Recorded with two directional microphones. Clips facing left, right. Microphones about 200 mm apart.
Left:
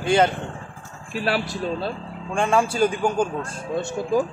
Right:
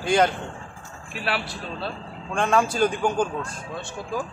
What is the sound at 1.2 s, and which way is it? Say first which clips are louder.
Speech: left 5 dB; 45° left (ahead or behind).